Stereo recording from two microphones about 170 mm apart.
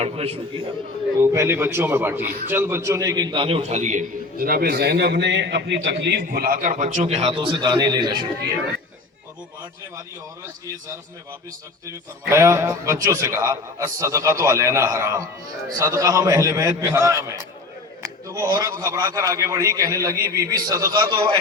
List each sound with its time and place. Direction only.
0.0 s a man's voice: 35° right (ahead or behind)
1.2 s a man's voice: 15° right (ahead or behind)
11.9 s a man's voice: 15° right (ahead or behind)